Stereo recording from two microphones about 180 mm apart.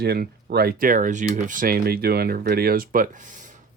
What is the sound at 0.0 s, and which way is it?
Speech, 60° right (ahead or behind).